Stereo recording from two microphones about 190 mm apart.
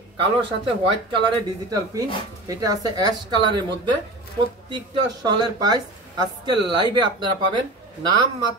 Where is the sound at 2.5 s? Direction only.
20° right (ahead or behind).